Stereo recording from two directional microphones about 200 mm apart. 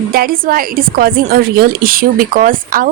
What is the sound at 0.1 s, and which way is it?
Speech, 45° right (ahead or behind).